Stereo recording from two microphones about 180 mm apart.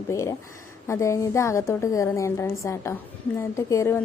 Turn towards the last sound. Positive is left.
turn(degrees=15)  # may be behind; listen again after turning